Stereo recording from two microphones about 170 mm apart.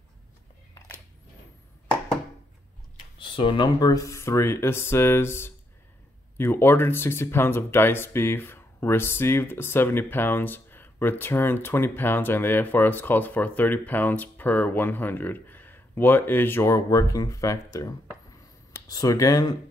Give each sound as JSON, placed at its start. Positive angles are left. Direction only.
{"t": 3.2, "sound": "speech", "side_deg": 30}